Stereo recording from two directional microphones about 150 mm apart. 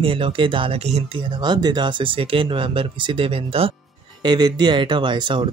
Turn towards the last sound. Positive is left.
turn(degrees=-30)  # may be behind; listen again after turning